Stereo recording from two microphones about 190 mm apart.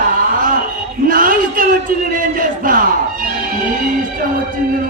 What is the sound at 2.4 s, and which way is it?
Speech, 45° right (ahead or behind).